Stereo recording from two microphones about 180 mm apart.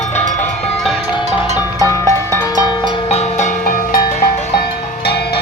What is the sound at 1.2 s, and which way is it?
Music, 40° right (ahead or behind).